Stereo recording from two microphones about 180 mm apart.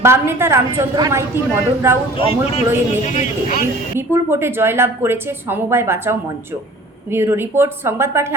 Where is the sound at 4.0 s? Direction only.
15° right (ahead or behind).